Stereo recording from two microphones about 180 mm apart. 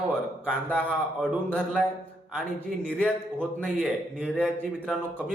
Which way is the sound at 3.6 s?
Centre (ahead or behind).